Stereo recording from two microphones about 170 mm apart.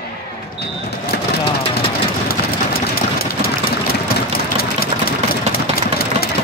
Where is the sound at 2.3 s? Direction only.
60° left (ahead or behind).